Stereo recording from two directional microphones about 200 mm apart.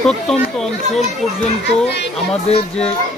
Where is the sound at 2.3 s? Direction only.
30° left (ahead or behind).